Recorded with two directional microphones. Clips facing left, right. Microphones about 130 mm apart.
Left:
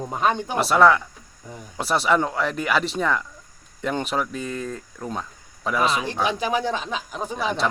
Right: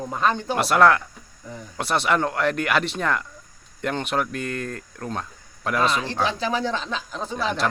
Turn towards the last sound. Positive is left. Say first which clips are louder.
# even
turn(degrees=10)  # may be behind; listen again after turning